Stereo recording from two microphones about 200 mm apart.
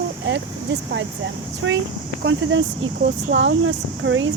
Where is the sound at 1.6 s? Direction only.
70° right (ahead or behind).